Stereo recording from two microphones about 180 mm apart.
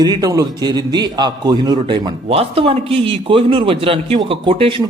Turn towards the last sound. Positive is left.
turn(degrees=-30)  # may be behind; listen again after turning